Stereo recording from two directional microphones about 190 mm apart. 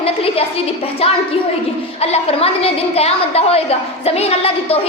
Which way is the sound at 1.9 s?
35° left (ahead or behind).